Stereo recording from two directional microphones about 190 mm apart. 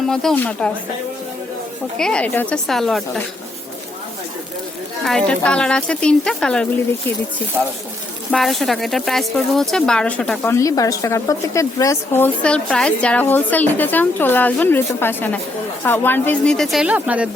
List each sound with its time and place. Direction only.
0.1 s speech: 5° left (ahead or behind)
2.0 s speech: 5° left (ahead or behind)
5.0 s speech: 5° left (ahead or behind)
8.3 s speech: centre (ahead or behind)